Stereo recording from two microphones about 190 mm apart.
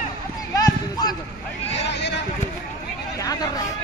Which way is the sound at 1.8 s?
65° left (ahead or behind).